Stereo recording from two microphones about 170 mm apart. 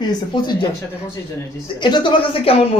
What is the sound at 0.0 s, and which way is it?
Speech, 25° left (ahead or behind).